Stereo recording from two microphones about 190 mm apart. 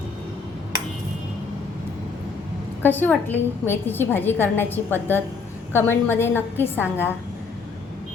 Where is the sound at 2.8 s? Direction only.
10° left (ahead or behind).